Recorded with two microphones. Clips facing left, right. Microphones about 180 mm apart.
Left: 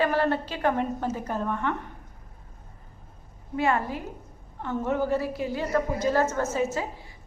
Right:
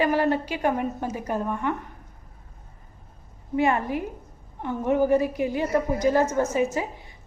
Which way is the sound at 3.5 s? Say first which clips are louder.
Right 3 dB; 15° right (ahead or behind).